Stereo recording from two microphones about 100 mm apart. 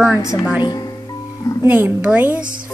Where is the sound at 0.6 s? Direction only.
40° left (ahead or behind).